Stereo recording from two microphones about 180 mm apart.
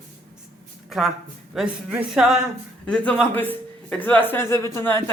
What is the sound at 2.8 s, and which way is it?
Speech, 5° left (ahead or behind).